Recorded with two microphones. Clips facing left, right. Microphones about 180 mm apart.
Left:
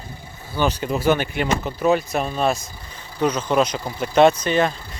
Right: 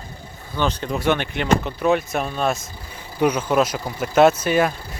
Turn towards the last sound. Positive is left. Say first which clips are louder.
# even
turn(degrees=-10)  # may be behind; listen again after turning